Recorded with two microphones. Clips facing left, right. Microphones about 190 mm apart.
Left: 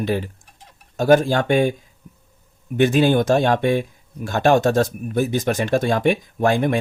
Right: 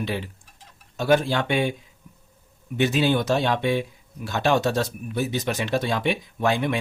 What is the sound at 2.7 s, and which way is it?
Speech, 50° left (ahead or behind).